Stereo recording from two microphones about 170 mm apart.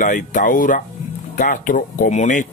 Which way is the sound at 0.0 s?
50° left (ahead or behind).